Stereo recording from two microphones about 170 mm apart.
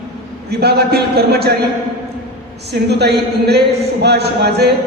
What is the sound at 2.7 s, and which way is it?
A man's voice, 75° right (ahead or behind).